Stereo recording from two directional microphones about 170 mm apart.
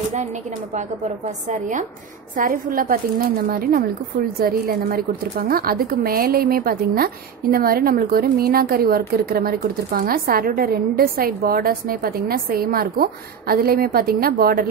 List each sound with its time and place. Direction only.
1.5 s a woman's voice: 50° right (ahead or behind)